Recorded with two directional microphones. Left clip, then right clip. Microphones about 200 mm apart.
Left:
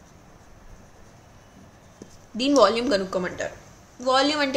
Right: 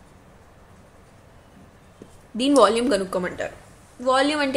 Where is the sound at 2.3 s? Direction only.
10° right (ahead or behind).